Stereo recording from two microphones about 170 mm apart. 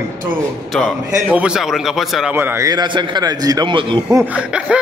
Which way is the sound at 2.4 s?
20° right (ahead or behind).